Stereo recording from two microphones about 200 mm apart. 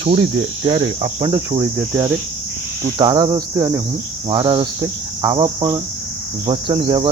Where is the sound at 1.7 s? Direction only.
10° right (ahead or behind).